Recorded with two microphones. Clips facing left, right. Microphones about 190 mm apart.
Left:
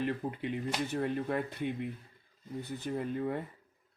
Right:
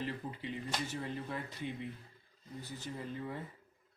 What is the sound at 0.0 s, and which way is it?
Speech, 60° left (ahead or behind).